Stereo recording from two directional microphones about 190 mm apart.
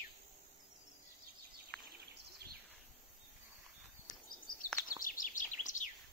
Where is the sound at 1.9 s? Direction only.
55° right (ahead or behind).